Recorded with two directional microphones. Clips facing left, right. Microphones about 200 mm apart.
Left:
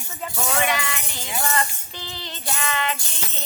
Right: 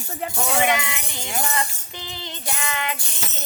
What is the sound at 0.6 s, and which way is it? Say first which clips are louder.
Jingle bell: right 4 dB; 20° right (ahead or behind).